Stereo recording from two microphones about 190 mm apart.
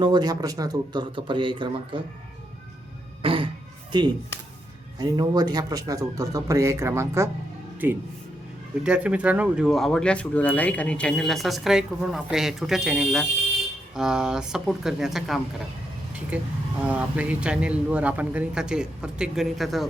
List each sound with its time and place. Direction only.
0.0 s speech: 20° right (ahead or behind)
3.2 s throat clearing: 30° right (ahead or behind)
4.9 s speech: 20° right (ahead or behind); by 19.9 s centre (ahead or behind)